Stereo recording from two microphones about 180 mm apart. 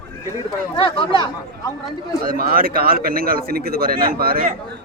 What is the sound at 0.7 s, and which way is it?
Speech, 25° left (ahead or behind).